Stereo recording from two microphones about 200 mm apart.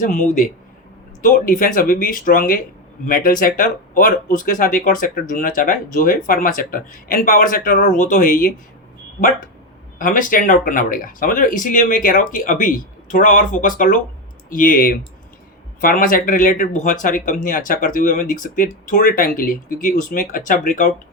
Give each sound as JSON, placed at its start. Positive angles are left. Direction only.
{"t": 0.0, "sound": "speech", "side_deg": 40}
{"t": 10.0, "sound": "speech", "side_deg": 45}